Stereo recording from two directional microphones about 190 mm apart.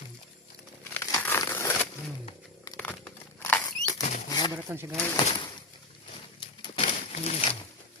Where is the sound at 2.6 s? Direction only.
10° left (ahead or behind).